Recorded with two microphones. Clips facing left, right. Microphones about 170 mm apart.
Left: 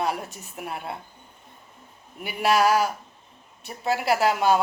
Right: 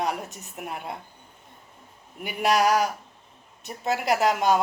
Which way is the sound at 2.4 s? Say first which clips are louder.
Left 1 dB; 15° right (ahead or behind).